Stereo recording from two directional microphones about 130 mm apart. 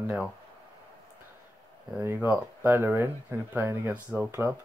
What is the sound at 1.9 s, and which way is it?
Speech, 15° right (ahead or behind).